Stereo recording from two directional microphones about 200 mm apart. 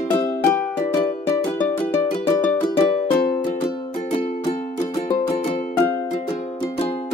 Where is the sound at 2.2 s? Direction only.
10° left (ahead or behind).